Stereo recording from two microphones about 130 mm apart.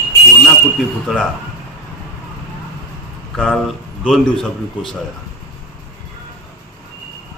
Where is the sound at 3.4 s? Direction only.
Centre (ahead or behind).